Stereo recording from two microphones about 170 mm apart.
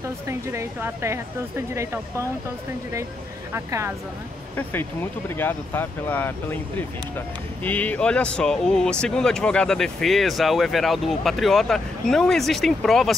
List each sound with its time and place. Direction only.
0.3 s speech: 15° right (ahead or behind)
3.5 s speech: 15° right (ahead or behind)
5.3 s speech: 15° left (ahead or behind)